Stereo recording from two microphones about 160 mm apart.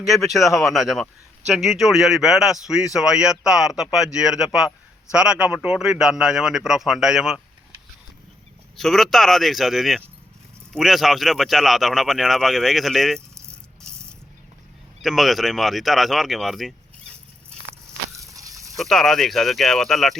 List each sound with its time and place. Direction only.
0.0 s a man's voice: centre (ahead or behind)
8.7 s a man's voice: centre (ahead or behind)
15.0 s speech: centre (ahead or behind)
18.3 s a sound: 20° right (ahead or behind)
18.8 s a man's voice: centre (ahead or behind)